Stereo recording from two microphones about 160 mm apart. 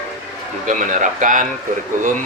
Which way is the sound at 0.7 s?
55° right (ahead or behind).